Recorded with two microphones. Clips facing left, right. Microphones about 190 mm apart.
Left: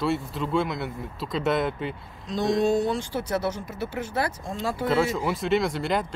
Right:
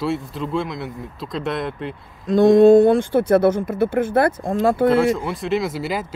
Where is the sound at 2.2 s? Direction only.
55° right (ahead or behind).